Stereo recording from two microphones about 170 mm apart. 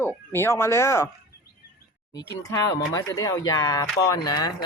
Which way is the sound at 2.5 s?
20° left (ahead or behind).